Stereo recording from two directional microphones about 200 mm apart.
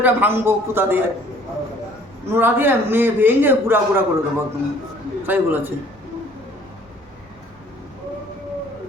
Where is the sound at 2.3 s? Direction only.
10° right (ahead or behind).